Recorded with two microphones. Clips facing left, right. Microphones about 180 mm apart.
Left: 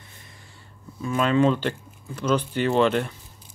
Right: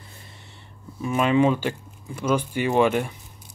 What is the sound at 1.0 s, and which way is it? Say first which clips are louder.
Speech: right 1 dB; 15° right (ahead or behind).